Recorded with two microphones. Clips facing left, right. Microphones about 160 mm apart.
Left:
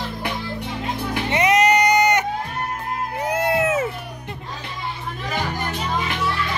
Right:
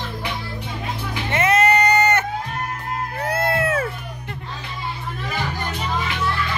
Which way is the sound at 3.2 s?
15° left (ahead or behind).